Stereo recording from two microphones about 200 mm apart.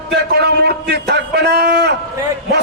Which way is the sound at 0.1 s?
55° right (ahead or behind).